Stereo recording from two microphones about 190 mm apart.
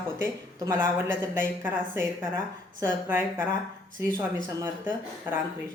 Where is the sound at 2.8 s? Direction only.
10° right (ahead or behind).